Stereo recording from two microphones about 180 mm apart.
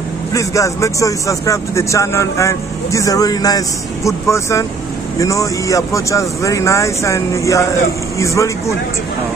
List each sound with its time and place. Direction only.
0.3 s speech: 20° left (ahead or behind)